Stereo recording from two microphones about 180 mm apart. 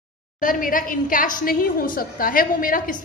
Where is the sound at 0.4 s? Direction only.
50° left (ahead or behind).